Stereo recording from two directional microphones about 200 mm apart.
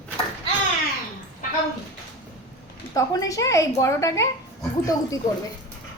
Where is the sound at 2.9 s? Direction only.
15° left (ahead or behind).